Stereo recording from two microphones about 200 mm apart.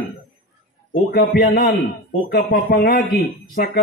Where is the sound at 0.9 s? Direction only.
50° left (ahead or behind).